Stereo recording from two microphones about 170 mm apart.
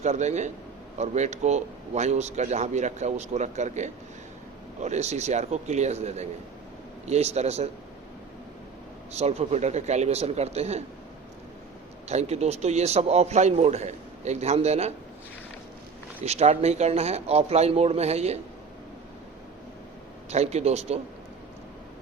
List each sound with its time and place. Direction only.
0.0 s a man's voice: 45° right (ahead or behind)
9.1 s a man's voice: 40° right (ahead or behind)
12.0 s a man's voice: 40° right (ahead or behind)
16.2 s a man's voice: 40° right (ahead or behind)
20.3 s a man's voice: 40° right (ahead or behind)